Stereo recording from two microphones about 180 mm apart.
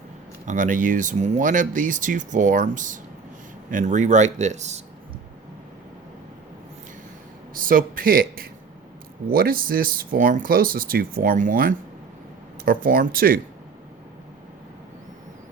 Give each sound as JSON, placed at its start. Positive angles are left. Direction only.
{"t": 0.4, "sound": "speech", "side_deg": -45}
{"t": 7.5, "sound": "speech", "side_deg": -50}